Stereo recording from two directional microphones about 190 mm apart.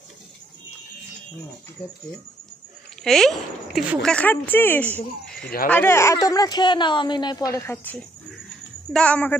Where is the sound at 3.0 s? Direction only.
Centre (ahead or behind).